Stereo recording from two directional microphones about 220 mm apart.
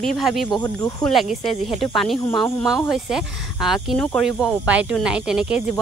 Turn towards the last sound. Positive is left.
turn(degrees=-5)  # may be behind; listen again after turning